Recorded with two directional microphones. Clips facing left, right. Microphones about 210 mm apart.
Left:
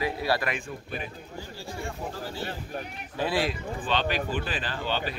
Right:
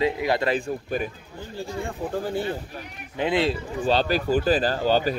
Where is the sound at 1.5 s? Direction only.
55° right (ahead or behind).